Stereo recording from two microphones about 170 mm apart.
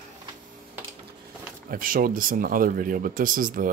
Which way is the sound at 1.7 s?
55° right (ahead or behind).